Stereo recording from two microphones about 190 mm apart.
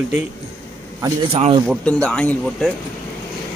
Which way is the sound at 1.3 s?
30° right (ahead or behind).